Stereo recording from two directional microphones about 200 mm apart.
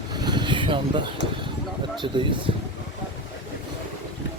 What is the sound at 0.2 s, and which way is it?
Vehicle, 20° right (ahead or behind).